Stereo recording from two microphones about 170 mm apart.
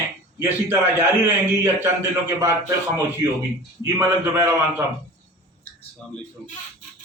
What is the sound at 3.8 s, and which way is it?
A man's voice, 15° right (ahead or behind).